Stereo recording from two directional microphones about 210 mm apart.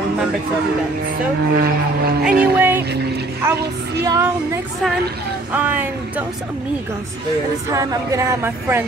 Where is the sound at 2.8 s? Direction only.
50° right (ahead or behind).